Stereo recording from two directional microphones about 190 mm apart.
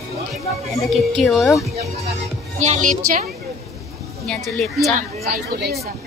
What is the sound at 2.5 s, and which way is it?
Speech, 35° right (ahead or behind).